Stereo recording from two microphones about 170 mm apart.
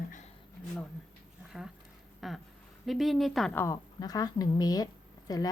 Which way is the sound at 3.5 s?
15° left (ahead or behind).